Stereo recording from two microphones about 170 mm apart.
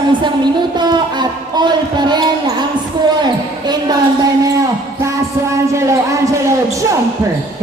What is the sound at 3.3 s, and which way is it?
Speech, 25° right (ahead or behind).